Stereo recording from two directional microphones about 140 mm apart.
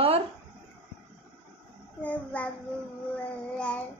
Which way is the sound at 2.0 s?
10° left (ahead or behind).